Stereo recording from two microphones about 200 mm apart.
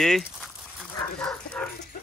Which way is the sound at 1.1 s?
5° left (ahead or behind).